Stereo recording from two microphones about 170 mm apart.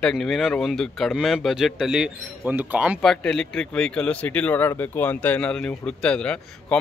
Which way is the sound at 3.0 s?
5° left (ahead or behind).